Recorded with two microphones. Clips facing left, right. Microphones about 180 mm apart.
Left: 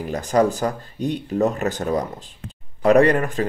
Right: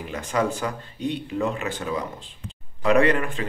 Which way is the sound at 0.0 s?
40° left (ahead or behind).